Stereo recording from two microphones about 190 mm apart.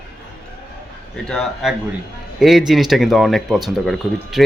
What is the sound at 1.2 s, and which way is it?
Speech, centre (ahead or behind).